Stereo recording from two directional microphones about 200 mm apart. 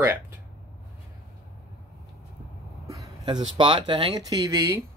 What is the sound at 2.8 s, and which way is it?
Speech, 15° right (ahead or behind).